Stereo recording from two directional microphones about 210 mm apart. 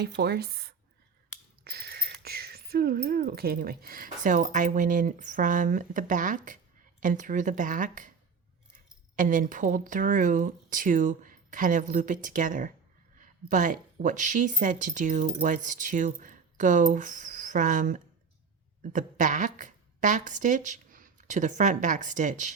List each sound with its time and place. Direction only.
0.0 s speech: 50° right (ahead or behind)
1.6 s a sound: 45° right (ahead or behind)
2.2 s speech: 45° right (ahead or behind)
9.1 s a woman's voice: 40° right (ahead or behind)